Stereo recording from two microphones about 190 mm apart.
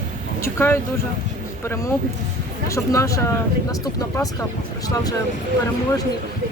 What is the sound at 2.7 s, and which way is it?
Speech, 15° left (ahead or behind).